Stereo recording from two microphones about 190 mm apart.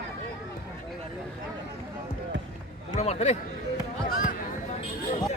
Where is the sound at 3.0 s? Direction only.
35° left (ahead or behind).